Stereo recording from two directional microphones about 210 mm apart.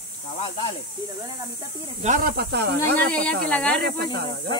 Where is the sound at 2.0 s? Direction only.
40° right (ahead or behind).